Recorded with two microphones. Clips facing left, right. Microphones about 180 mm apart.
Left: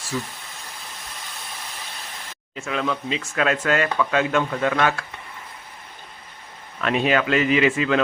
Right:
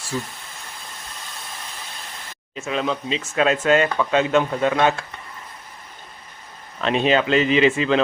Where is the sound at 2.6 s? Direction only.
25° right (ahead or behind).